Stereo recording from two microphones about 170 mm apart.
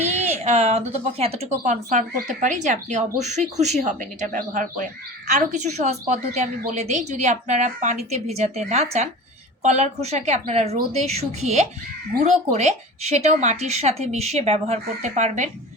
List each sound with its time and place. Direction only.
0.4 s speech: 40° right (ahead or behind)